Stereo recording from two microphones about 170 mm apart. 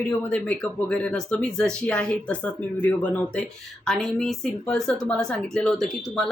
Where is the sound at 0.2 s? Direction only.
10° left (ahead or behind).